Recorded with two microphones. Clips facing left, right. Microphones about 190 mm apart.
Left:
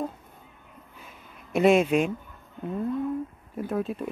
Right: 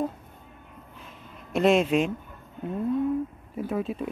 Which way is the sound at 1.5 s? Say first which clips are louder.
Left 1 dB; centre (ahead or behind).